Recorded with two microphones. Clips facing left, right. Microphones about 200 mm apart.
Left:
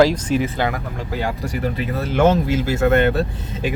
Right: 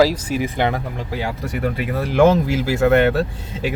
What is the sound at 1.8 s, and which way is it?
Speech, 10° right (ahead or behind).